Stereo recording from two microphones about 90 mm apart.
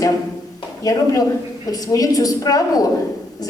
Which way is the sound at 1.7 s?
45° left (ahead or behind).